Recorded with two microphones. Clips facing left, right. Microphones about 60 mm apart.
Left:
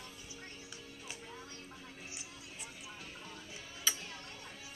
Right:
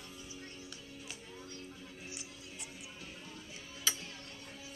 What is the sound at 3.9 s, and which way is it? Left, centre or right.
Tick-tock, centre.